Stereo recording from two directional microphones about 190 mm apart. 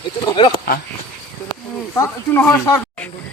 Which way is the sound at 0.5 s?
55° left (ahead or behind).